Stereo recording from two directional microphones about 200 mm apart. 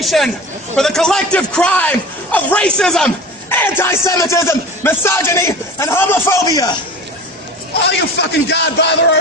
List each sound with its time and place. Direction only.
0.0 s a man's voice: centre (ahead or behind); by 6.8 s 20° left (ahead or behind)
8.2 s a man's voice: 60° left (ahead or behind)